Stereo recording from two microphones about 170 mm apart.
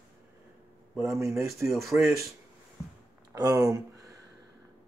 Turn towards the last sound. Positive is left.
turn(degrees=-20)  # may be behind; listen again after turning